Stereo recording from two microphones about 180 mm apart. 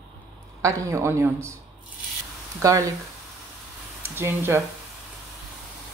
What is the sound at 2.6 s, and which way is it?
Speech, 20° right (ahead or behind).